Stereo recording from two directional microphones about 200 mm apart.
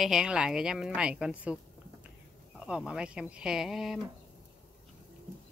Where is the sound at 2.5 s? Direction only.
5° right (ahead or behind).